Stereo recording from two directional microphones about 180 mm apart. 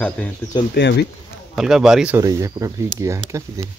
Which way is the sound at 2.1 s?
15° right (ahead or behind).